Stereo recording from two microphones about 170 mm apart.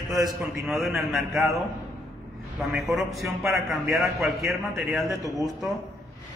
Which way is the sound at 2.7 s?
Centre (ahead or behind).